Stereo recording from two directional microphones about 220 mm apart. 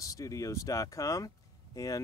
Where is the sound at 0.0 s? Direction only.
15° left (ahead or behind).